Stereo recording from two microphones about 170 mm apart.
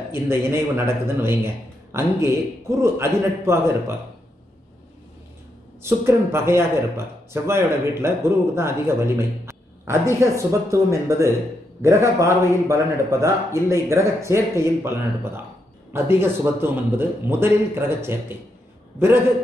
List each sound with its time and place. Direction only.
0.1 s speech: 15° right (ahead or behind)
5.8 s speech: 15° right (ahead or behind)